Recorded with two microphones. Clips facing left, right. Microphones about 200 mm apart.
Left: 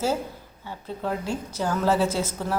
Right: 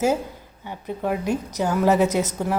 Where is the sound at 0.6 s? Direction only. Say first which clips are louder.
Right 4 dB; 15° right (ahead or behind).